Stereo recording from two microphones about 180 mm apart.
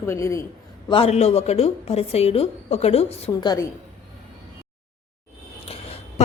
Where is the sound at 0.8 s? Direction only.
30° left (ahead or behind).